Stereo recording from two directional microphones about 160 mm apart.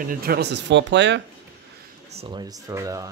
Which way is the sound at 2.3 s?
20° right (ahead or behind).